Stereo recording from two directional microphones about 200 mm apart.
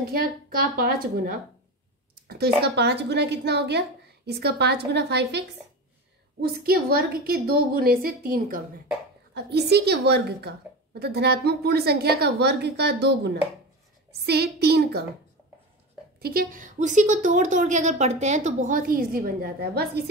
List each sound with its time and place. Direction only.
0.0 s a woman's voice: 50° right (ahead or behind)
6.4 s a woman's voice: 50° right (ahead or behind)
16.2 s a woman's voice: 50° right (ahead or behind)